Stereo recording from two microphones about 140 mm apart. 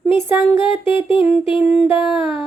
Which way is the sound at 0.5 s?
40° left (ahead or behind).